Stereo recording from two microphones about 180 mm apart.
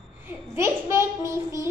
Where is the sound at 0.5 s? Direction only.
15° right (ahead or behind).